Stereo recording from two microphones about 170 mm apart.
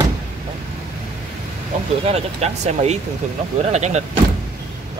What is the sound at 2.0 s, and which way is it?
Speech, 40° right (ahead or behind).